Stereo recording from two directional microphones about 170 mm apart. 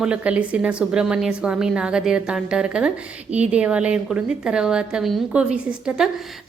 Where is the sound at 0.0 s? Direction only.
5° right (ahead or behind).